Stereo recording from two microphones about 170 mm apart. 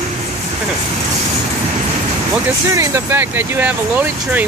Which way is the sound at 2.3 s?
15° right (ahead or behind).